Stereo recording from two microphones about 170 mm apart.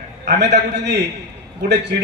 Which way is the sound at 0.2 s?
80° right.